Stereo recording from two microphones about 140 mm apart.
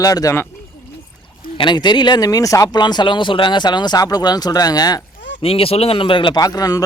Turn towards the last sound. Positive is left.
turn(degrees=25)  # may be behind; listen again after turning